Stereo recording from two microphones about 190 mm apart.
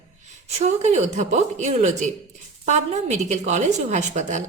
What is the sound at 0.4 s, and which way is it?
Speech, 35° right (ahead or behind).